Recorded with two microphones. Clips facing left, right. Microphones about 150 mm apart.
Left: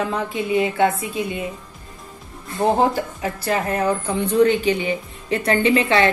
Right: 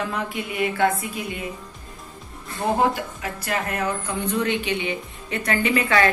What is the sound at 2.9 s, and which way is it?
A woman's voice, 30° left (ahead or behind).